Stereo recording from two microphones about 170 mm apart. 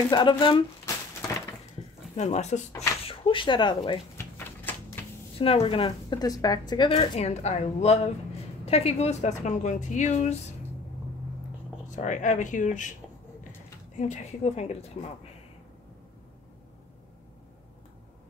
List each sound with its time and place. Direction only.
0.1 s speech: 30° left (ahead or behind)
2.1 s a woman's voice: 45° left (ahead or behind)
3.1 s speech: 30° left (ahead or behind)
4.2 s typewriter: 15° left (ahead or behind)
5.4 s a woman's voice: 35° left (ahead or behind)
11.9 s a woman's voice: 45° left (ahead or behind)
13.9 s speech: 45° left (ahead or behind)